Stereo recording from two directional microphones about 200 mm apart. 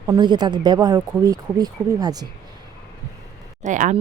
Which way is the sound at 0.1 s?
20° right (ahead or behind).